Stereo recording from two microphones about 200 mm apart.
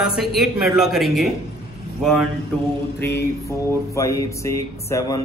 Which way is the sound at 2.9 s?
15° left (ahead or behind).